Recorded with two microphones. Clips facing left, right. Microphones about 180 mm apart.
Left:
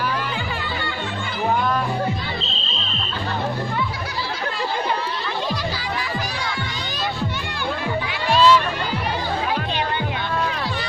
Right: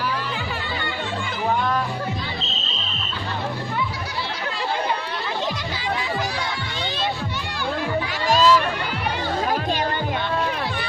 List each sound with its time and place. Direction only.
8.3 s crowd: 40° right (ahead or behind)